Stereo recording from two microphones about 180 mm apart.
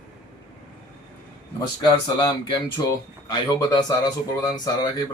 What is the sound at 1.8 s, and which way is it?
Speech, 25° left (ahead or behind).